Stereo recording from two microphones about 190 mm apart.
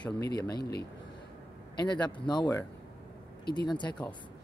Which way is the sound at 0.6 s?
60° left (ahead or behind).